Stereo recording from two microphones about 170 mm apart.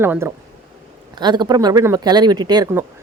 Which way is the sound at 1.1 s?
25° right (ahead or behind).